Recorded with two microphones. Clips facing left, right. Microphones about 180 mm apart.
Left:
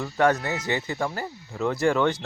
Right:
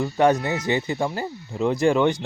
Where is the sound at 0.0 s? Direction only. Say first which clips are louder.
Right 3 dB; 15° right (ahead or behind).